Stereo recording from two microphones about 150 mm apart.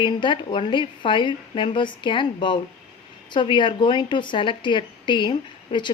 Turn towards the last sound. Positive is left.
turn(degrees=30)  # may be behind; listen again after turning